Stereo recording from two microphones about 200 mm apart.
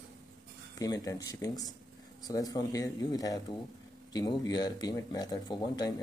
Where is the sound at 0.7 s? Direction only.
20° left (ahead or behind).